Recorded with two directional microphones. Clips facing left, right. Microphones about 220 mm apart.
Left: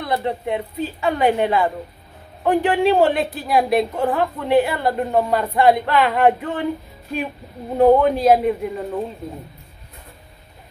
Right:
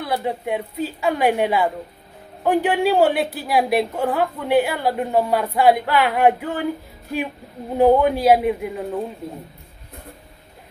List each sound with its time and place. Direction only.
0.0 s a woman's voice: 5° right (ahead or behind)
7.7 s a man's voice: 5° right (ahead or behind)